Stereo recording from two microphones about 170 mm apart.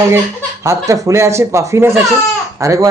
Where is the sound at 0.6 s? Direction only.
20° right (ahead or behind).